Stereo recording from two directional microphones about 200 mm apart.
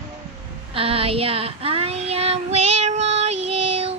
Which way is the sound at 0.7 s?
30° right (ahead or behind).